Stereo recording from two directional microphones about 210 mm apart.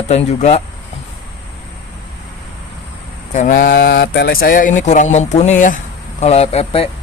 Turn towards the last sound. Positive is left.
turn(degrees=30)  # may be behind; listen again after turning